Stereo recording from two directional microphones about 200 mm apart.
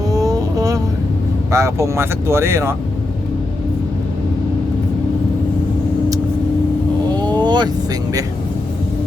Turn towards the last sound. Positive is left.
turn(degrees=-20)  # may be behind; listen again after turning